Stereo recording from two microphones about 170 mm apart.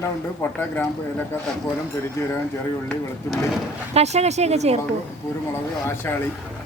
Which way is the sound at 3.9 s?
40° right (ahead or behind).